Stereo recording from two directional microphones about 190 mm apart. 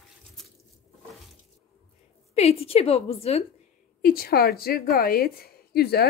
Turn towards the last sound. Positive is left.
turn(degrees=55)  # may be behind; listen again after turning